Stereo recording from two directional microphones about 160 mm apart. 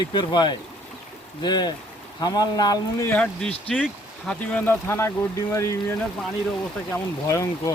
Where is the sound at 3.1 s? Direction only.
5° left (ahead or behind).